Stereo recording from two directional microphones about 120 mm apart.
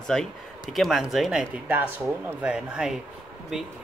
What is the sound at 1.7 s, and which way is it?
Speech, 15° right (ahead or behind).